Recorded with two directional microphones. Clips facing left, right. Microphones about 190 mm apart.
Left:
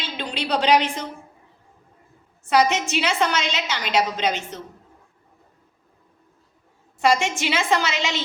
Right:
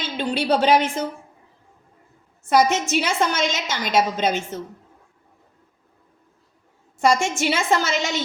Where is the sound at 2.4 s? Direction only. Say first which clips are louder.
Right 1 dB; 45° right (ahead or behind).